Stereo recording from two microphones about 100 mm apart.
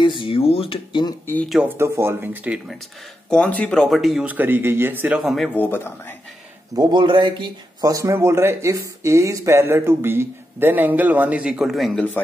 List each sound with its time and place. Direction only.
0.0 s a sound: 55° left (ahead or behind); by 0.7 s 75° left (ahead or behind)
1.8 s speech: 25° right (ahead or behind)
3.3 s speech: 10° left (ahead or behind)
4.3 s speech: 20° right (ahead or behind)
5.2 s speech: centre (ahead or behind)
5.5 s speech: 20° left (ahead or behind)
6.7 s a man's voice: 40° right (ahead or behind)
7.0 s speech: 55° right (ahead or behind)
7.9 s speech: 30° right (ahead or behind); by 12.0 s centre (ahead or behind)